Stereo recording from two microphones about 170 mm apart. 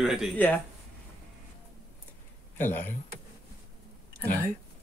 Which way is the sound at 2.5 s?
10° left (ahead or behind).